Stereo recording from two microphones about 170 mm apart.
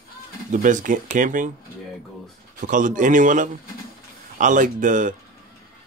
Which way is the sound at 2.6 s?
50° right (ahead or behind).